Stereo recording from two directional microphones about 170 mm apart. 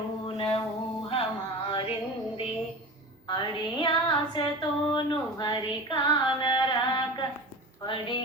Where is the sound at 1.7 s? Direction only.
35° left (ahead or behind).